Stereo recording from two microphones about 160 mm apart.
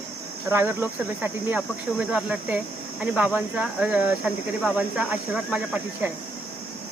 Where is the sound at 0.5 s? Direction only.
10° right (ahead or behind).